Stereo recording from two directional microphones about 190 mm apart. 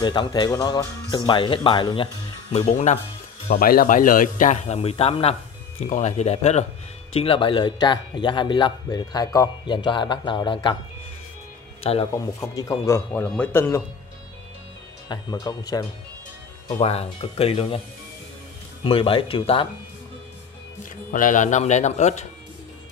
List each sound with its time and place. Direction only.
0.0 s speech: 25° left (ahead or behind)
2.7 s a man's voice: 40° left (ahead or behind); by 10.8 s 25° left (ahead or behind)
11.8 s speech: 30° left (ahead or behind)
12.1 s a man's voice: 15° left (ahead or behind)
15.0 s speech: 20° left (ahead or behind)
16.7 s speech: 35° left (ahead or behind)
18.9 s speech: 30° left (ahead or behind)
21.1 s speech: 45° left (ahead or behind)